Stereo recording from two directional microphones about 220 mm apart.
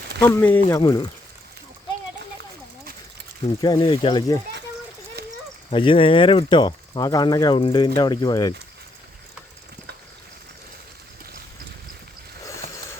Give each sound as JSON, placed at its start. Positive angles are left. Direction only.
{"t": 0.2, "sound": "speech", "side_deg": 10}
{"t": 3.6, "sound": "speech", "side_deg": 20}
{"t": 5.2, "sound": "a sound", "side_deg": -45}
{"t": 5.7, "sound": "speech", "side_deg": 25}